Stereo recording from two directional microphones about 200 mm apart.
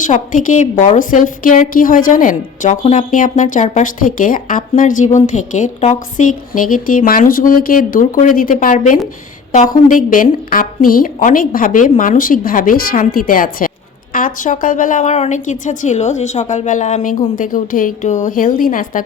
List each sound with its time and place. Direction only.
0.0 s a woman's voice: 40° left (ahead or behind)